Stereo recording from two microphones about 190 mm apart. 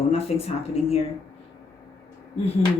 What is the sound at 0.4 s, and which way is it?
Speech, 30° left (ahead or behind).